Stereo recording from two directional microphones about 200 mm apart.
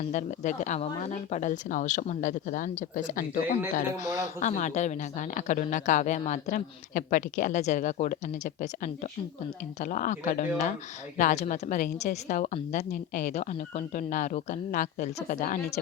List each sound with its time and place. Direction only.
0.1 s speech: 40° left (ahead or behind)